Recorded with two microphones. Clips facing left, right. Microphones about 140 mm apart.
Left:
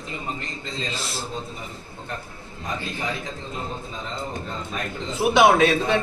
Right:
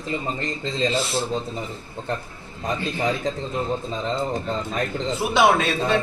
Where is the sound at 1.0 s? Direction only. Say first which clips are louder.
Right 8 dB; centre (ahead or behind).